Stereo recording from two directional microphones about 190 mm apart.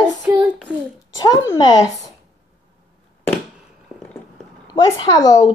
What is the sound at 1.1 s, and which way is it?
Speech, 20° left (ahead or behind).